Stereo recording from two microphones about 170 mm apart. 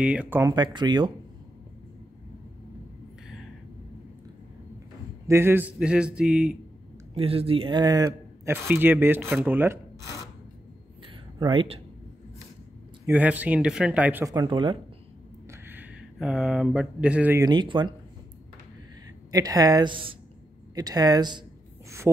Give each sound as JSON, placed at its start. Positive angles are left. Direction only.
{"t": 0.0, "sound": "speech", "side_deg": -5}
{"t": 0.4, "sound": "a woman's voice", "side_deg": -25}
{"t": 5.3, "sound": "a man's voice", "side_deg": -15}
{"t": 7.2, "sound": "a man's voice", "side_deg": -35}
{"t": 8.6, "sound": "speech", "side_deg": -10}
{"t": 11.3, "sound": "speech", "side_deg": -30}
{"t": 13.0, "sound": "speech", "side_deg": -10}
{"t": 14.3, "sound": "a woman's voice", "side_deg": -25}
{"t": 15.5, "sound": "speech", "side_deg": -10}
{"t": 17.4, "sound": "a woman's voice", "side_deg": -25}
{"t": 19.3, "sound": "a woman's voice", "side_deg": -20}
{"t": 20.7, "sound": "a sound", "side_deg": -20}